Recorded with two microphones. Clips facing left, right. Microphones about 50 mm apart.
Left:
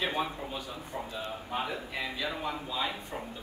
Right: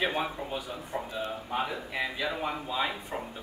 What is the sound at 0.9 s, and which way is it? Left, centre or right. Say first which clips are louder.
Speech: right 3 dB; right.